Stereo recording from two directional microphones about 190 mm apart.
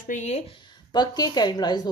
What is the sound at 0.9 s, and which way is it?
Speech, 20° left (ahead or behind).